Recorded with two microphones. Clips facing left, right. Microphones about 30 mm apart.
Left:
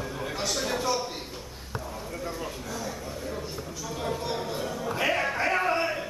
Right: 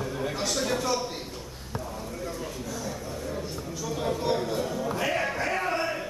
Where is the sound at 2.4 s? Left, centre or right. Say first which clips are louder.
Even; centre.